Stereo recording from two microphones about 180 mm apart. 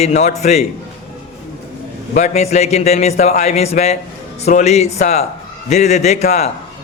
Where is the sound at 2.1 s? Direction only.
40° left (ahead or behind).